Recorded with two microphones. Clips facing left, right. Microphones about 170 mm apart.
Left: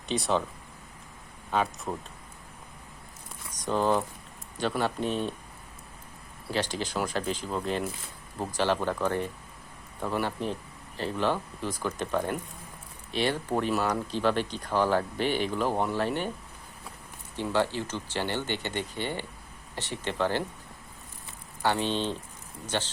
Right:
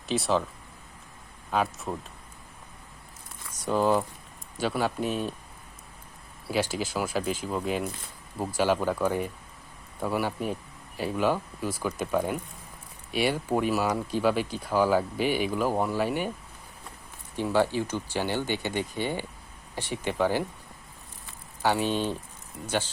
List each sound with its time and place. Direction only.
0.1 s speech: centre (ahead or behind)
1.5 s speech: centre (ahead or behind)
3.7 s speech: 5° right (ahead or behind)
6.5 s speech: 10° right (ahead or behind)
17.3 s speech: 10° right (ahead or behind)
21.6 s speech: 10° right (ahead or behind)